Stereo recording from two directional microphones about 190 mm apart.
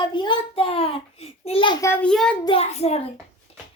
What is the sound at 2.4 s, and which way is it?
Speech, 30° left (ahead or behind).